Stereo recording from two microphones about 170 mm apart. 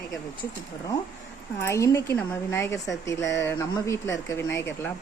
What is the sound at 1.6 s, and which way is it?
Speech, 15° left (ahead or behind).